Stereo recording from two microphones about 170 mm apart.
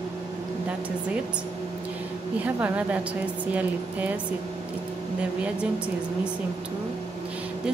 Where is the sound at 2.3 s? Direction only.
10° right (ahead or behind).